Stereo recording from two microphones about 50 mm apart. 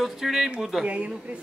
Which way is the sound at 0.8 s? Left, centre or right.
Right.